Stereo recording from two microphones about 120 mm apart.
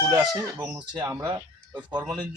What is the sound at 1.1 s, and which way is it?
Speech, 25° right (ahead or behind).